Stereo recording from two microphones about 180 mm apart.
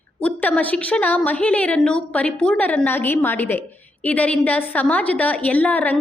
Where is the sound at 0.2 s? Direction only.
5° left (ahead or behind).